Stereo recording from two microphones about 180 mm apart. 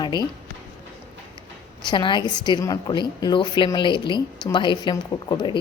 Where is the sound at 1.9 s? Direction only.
25° left (ahead or behind).